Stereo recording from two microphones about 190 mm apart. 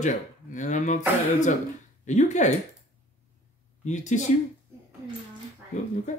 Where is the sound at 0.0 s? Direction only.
40° left (ahead or behind).